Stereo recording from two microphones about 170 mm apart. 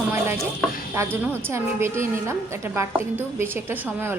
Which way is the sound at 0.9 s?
10° right (ahead or behind).